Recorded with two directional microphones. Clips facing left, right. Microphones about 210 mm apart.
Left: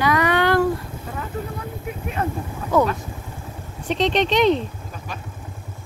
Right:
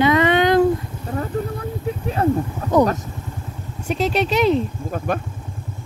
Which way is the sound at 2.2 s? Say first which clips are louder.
Right 8 dB; 30° right (ahead or behind).